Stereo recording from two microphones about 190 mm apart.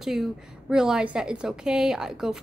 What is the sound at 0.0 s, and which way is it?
A woman's voice, centre (ahead or behind).